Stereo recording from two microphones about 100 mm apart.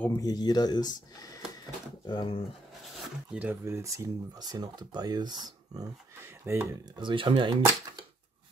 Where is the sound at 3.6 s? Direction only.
30° right (ahead or behind).